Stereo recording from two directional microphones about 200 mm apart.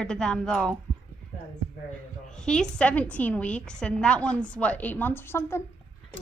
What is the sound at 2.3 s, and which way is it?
A woman's voice, 5° left (ahead or behind).